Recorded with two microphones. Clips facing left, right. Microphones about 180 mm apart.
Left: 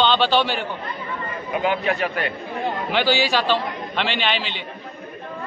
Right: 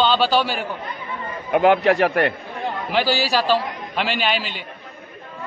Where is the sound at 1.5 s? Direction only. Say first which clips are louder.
Right 7 dB; 70° right (ahead or behind).